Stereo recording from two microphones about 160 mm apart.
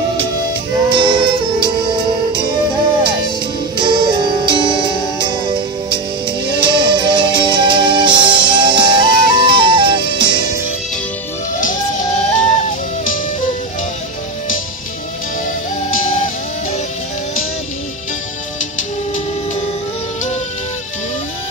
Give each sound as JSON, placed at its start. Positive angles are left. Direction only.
{"t": 0.8, "sound": "music", "side_deg": -30}